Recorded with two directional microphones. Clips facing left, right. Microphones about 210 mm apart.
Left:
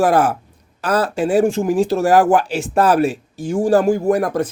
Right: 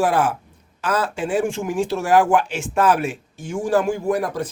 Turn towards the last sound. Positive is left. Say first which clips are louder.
# left 5 dB
turn(degrees=50)  # may be behind; listen again after turning